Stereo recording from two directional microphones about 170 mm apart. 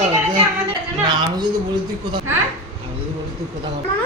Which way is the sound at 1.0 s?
25° right (ahead or behind).